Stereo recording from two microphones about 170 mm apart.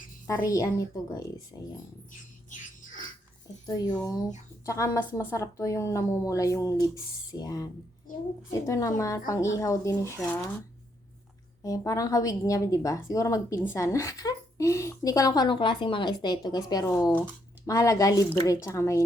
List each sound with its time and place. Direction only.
0.3 s a woman's voice: 20° left (ahead or behind)
3.7 s a woman's voice: 25° left (ahead or behind)
11.6 s a woman's voice: 20° left (ahead or behind)